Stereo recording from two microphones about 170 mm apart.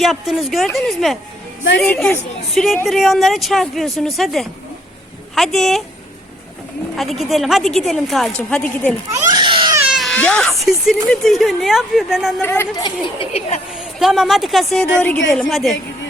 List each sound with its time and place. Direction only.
0.0 s a woman's voice: centre (ahead or behind)
6.9 s speech: centre (ahead or behind)
9.3 s baby cry: 30° right (ahead or behind)
9.9 s cat: centre (ahead or behind)
10.2 s speech: 5° left (ahead or behind)
12.4 s a woman's voice: 15° left (ahead or behind)
12.8 s speech: 35° left (ahead or behind)
13.7 s speech: centre (ahead or behind)